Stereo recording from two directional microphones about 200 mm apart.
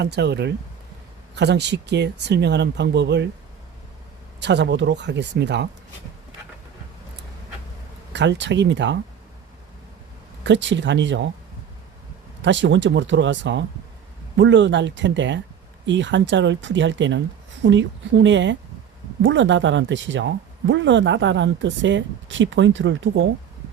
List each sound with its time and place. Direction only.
0.0 s speech: 55° right (ahead or behind)
4.4 s speech: 60° right (ahead or behind)
8.1 s speech: 60° right (ahead or behind)
10.4 s speech: 65° right (ahead or behind)
12.4 s speech: 65° right (ahead or behind)